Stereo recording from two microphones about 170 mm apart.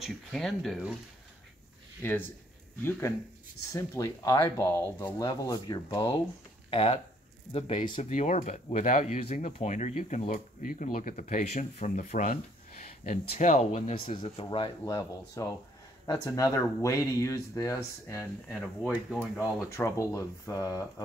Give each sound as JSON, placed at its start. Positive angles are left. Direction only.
{"t": 0.0, "sound": "speech", "side_deg": 0}
{"t": 2.0, "sound": "speech", "side_deg": 10}
{"t": 3.7, "sound": "speech", "side_deg": 20}
{"t": 6.7, "sound": "speech", "side_deg": 35}
{"t": 18.5, "sound": "speech", "side_deg": 5}
{"t": 19.7, "sound": "speech", "side_deg": 15}